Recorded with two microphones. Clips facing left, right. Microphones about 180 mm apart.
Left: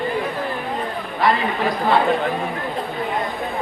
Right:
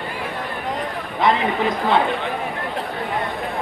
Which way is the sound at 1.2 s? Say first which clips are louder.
Right 1 dB; 20° right (ahead or behind).